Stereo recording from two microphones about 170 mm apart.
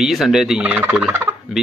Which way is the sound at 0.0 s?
Centre (ahead or behind).